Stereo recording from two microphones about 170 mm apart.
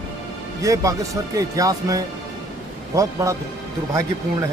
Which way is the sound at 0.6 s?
20° right (ahead or behind).